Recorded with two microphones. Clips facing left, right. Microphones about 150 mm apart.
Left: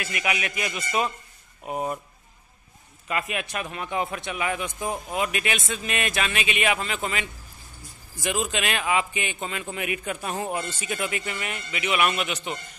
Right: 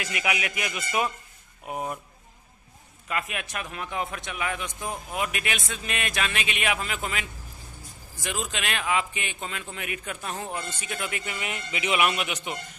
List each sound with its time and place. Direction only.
0.0 s a man's voice: 15° right (ahead or behind); by 2.0 s centre (ahead or behind)
3.1 s speech: centre (ahead or behind)
11.2 s speech: 15° right (ahead or behind)
12.0 s a man's voice: 15° right (ahead or behind)